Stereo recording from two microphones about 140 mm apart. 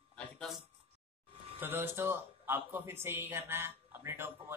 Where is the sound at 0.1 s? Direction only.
10° left (ahead or behind).